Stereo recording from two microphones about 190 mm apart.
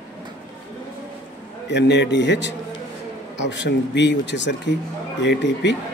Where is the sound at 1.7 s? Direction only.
65° left (ahead or behind).